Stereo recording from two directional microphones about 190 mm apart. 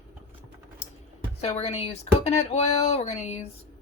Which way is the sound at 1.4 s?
35° left (ahead or behind).